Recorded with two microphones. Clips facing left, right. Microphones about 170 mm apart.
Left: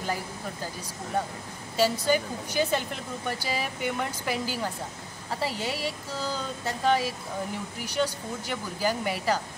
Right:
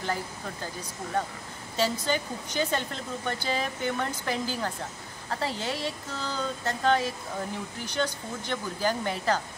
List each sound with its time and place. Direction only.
1.8 s speech: 10° left (ahead or behind)